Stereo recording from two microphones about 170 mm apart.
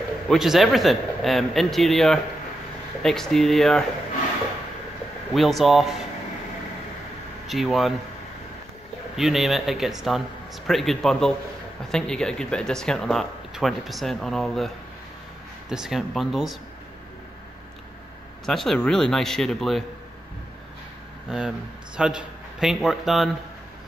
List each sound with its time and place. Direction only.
0.3 s speech: centre (ahead or behind)
5.3 s speech: centre (ahead or behind)
7.4 s speech: centre (ahead or behind)
9.1 s speech: centre (ahead or behind)
15.7 s speech: 5° right (ahead or behind)
18.4 s speech: centre (ahead or behind)
21.3 s a man's voice: 5° right (ahead or behind)